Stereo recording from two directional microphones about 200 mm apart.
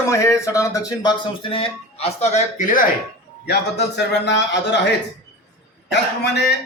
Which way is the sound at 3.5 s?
60° left (ahead or behind).